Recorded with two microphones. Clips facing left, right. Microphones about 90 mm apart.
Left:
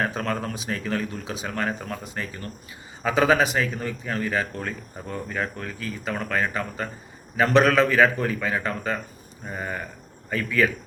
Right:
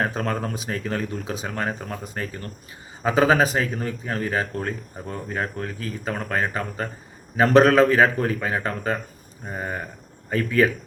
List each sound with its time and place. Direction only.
0.0 s a man's voice: 35° right (ahead or behind)